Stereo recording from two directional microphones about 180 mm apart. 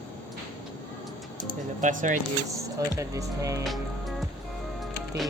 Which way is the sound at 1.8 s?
45° right (ahead or behind).